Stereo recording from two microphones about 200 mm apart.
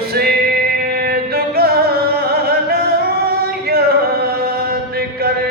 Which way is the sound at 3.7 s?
50° right (ahead or behind).